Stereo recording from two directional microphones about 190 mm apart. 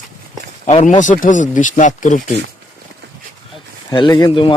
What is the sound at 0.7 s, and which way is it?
Speech, 40° left (ahead or behind).